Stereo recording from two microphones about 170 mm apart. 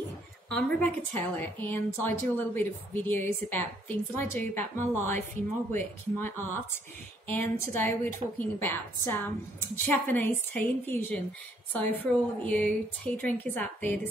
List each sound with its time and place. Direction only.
0.5 s a woman's voice: 5° left (ahead or behind)